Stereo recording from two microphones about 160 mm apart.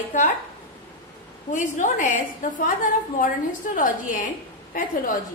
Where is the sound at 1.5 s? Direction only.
55° left (ahead or behind).